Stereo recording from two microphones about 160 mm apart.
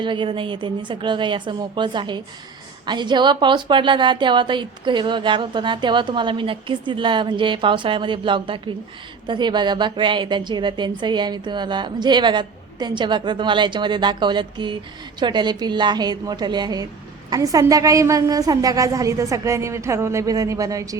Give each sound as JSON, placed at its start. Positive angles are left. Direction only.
{"t": 0.0, "sound": "a woman's voice", "side_deg": -30}